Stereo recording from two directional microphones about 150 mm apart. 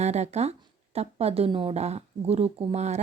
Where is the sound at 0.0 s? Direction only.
50° right (ahead or behind).